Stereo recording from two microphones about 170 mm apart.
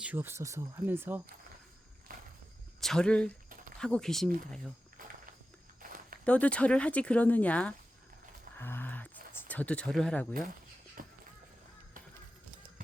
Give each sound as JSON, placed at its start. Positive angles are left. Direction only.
{"t": 0.0, "sound": "speech", "side_deg": -10}
{"t": 2.8, "sound": "speech", "side_deg": 5}
{"t": 5.8, "sound": "walk", "side_deg": -55}
{"t": 6.2, "sound": "speech", "side_deg": 10}
{"t": 8.5, "sound": "a sound", "side_deg": 10}
{"t": 9.5, "sound": "speech", "side_deg": 10}
{"t": 11.0, "sound": "music", "side_deg": -55}